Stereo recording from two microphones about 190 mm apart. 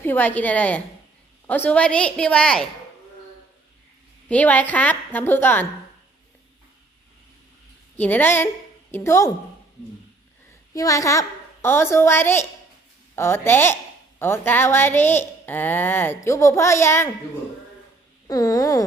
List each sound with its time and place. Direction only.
0.0 s a woman's voice: 10° left (ahead or behind)
4.3 s a woman's voice: 10° left (ahead or behind)
7.9 s a woman's voice: 10° left (ahead or behind)
10.8 s a woman's voice: 15° left (ahead or behind)
18.3 s a sound: 20° left (ahead or behind)